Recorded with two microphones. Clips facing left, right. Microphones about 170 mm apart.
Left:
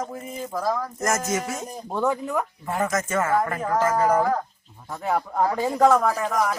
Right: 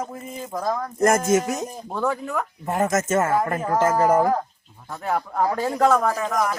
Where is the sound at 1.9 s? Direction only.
15° left (ahead or behind).